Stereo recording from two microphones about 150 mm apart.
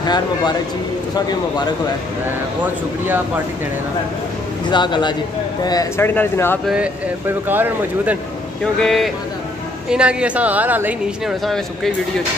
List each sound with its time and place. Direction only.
0.0 s a man's voice: 30° left (ahead or behind)
4.6 s a man's voice: 30° left (ahead or behind); by 6.6 s 15° left (ahead or behind)
6.7 s speech: 10° right (ahead or behind)
8.7 s speech: centre (ahead or behind)
11.4 s speech: centre (ahead or behind)